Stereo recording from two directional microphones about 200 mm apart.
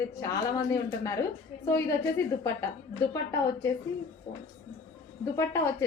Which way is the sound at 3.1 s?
15° left (ahead or behind).